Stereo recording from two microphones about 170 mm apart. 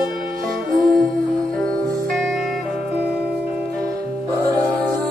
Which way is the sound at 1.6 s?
Centre (ahead or behind).